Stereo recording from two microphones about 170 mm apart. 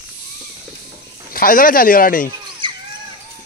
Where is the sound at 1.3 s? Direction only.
55° left (ahead or behind).